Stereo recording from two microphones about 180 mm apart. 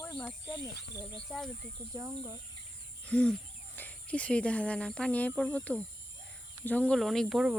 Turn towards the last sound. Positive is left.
turn(degrees=0)  # may be behind; listen again after turning